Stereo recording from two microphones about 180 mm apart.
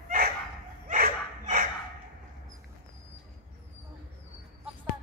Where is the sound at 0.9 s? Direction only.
50° right (ahead or behind).